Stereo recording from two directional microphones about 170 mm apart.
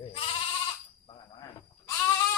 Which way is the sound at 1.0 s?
25° left (ahead or behind).